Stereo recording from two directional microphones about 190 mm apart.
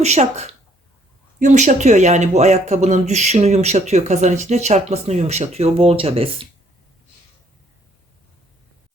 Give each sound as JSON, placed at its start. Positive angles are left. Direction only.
{"t": 0.0, "sound": "speech", "side_deg": -35}